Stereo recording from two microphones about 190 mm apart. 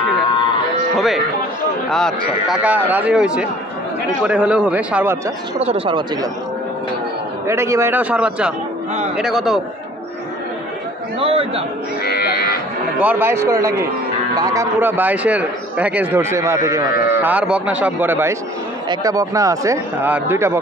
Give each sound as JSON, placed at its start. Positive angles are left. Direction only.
{"t": 0.9, "sound": "a man's voice", "side_deg": 0}
{"t": 5.6, "sound": "speech", "side_deg": -30}
{"t": 7.4, "sound": "a man's voice", "side_deg": -15}
{"t": 11.1, "sound": "a man's voice", "side_deg": -30}
{"t": 12.0, "sound": "livestock", "side_deg": 55}
{"t": 13.0, "sound": "a man's voice", "side_deg": -10}